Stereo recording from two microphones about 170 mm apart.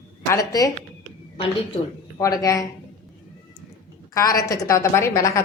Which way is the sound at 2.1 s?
20° left (ahead or behind).